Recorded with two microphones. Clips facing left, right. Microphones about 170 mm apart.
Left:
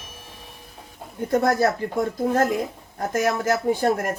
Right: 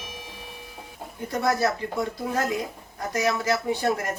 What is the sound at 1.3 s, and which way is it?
Speech, 55° left (ahead or behind).